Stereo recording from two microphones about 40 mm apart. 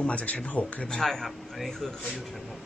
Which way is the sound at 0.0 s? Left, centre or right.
Left.